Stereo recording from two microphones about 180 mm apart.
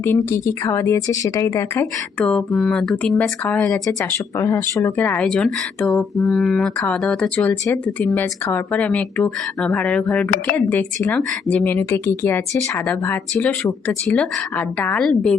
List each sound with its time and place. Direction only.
0.0 s speech: 15° left (ahead or behind)